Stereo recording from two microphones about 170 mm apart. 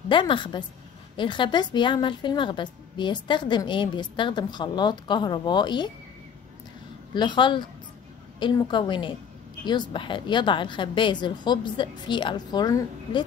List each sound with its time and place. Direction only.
0.1 s a woman's voice: 30° left (ahead or behind)
7.2 s a woman's voice: 30° left (ahead or behind)